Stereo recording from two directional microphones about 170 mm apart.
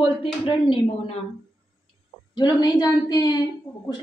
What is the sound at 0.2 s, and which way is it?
Speech, 30° left (ahead or behind).